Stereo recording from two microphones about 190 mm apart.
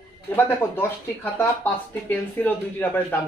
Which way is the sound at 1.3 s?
10° left (ahead or behind).